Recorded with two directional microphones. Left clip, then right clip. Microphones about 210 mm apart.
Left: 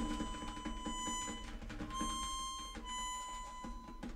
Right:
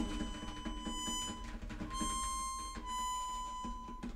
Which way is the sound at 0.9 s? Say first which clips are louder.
Right 2 dB; 30° right (ahead or behind).